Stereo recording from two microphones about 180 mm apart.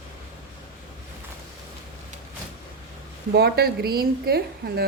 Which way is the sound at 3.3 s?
60° right (ahead or behind).